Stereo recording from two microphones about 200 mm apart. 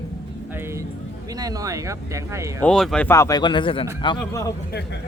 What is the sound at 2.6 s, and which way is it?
A man's voice, 5° left (ahead or behind).